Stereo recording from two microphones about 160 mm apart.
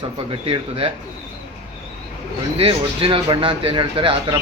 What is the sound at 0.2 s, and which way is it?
Speech, 35° right (ahead or behind).